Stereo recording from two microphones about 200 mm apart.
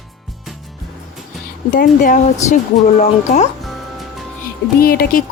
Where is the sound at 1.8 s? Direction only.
40° left (ahead or behind).